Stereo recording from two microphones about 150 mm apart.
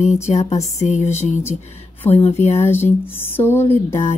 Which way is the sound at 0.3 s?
50° left (ahead or behind).